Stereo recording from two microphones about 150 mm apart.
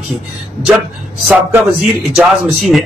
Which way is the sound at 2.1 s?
Centre (ahead or behind).